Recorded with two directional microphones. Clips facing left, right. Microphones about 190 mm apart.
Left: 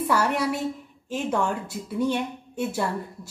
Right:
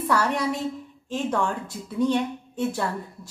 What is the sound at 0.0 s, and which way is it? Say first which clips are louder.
A woman's voice: even; 10° left (ahead or behind).